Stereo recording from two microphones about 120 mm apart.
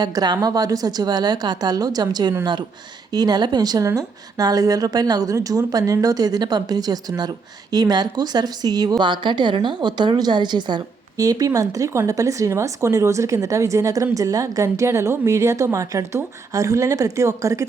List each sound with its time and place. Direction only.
0.0 s a woman's voice: 35° right (ahead or behind)